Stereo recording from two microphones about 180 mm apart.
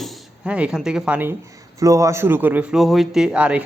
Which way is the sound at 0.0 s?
5° right (ahead or behind).